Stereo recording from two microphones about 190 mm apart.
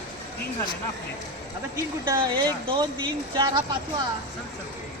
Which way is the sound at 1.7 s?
15° right (ahead or behind).